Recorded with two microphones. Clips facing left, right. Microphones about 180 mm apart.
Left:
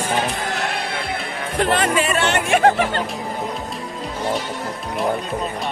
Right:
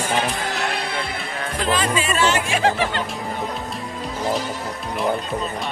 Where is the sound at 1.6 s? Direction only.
65° left (ahead or behind).